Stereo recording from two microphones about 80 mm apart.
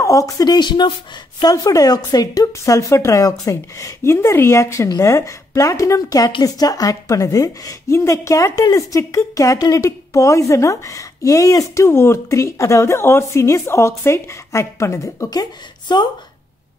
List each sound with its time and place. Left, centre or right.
0.0 s speech: left
0.6 s speech: left
1.5 s a woman's voice: left
15.9 s a woman's voice: left